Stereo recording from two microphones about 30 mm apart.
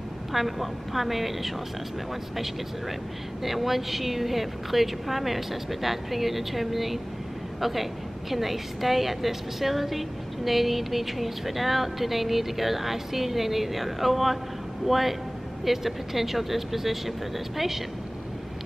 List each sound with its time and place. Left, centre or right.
0.3 s a woman's voice: centre
3.4 s a woman's voice: centre